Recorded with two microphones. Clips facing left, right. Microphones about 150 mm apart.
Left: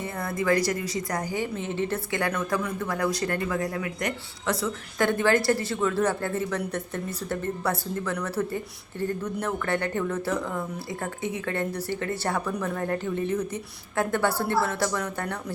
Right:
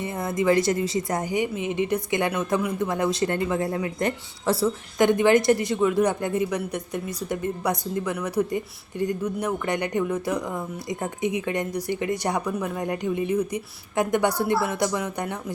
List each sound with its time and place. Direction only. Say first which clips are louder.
0.0 s a woman's voice: right 4 dB; 20° right (ahead or behind)
4.9 s a woman's voice: right 4 dB; 20° right (ahead or behind)